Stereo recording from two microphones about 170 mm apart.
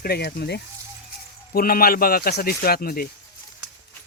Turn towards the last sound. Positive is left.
turn(degrees=60)  # may be behind; listen again after turning